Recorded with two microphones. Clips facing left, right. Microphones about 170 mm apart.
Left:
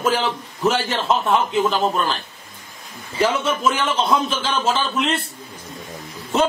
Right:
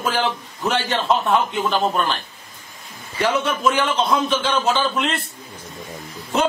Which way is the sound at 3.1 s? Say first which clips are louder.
Left 1 dB; centre (ahead or behind).